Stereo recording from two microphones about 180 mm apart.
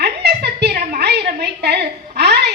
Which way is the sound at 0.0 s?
65° right (ahead or behind).